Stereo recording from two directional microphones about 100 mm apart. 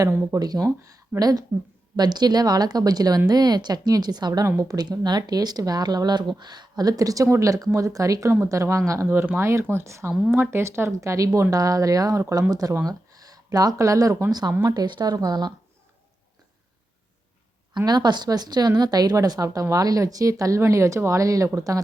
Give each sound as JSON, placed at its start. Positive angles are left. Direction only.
{"t": 0.0, "sound": "speech", "side_deg": -25}
{"t": 0.3, "sound": "speech", "side_deg": -40}
{"t": 4.4, "sound": "speech", "side_deg": -30}
{"t": 4.8, "sound": "speech", "side_deg": -45}
{"t": 17.8, "sound": "speech", "side_deg": -45}